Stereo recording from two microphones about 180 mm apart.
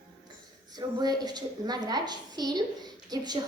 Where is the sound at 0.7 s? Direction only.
20° right (ahead or behind).